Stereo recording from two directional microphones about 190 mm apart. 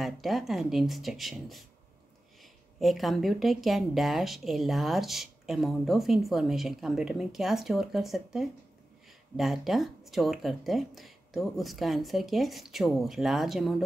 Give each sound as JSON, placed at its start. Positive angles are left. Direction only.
{"t": 0.0, "sound": "a woman's voice", "side_deg": 0}